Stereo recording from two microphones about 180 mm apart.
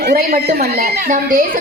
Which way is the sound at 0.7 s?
45° right (ahead or behind).